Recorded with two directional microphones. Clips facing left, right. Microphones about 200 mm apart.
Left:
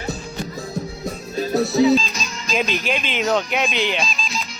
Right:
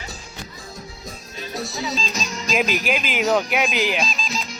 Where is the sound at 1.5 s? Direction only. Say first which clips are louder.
Left 13 dB; 65° left (ahead or behind).